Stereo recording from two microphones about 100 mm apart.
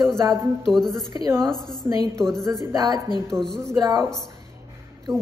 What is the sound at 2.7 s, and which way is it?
Speech, 40° right (ahead or behind).